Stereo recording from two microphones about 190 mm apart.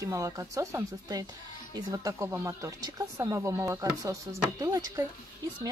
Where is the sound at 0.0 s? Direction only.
15° right (ahead or behind).